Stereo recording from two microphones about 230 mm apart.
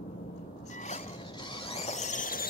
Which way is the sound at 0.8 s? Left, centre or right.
Left.